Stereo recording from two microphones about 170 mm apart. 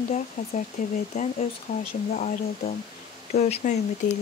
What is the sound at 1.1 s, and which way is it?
Speech, 40° left (ahead or behind).